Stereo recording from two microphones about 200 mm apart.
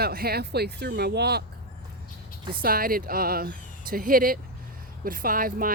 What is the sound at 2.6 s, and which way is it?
Speech, 45° right (ahead or behind).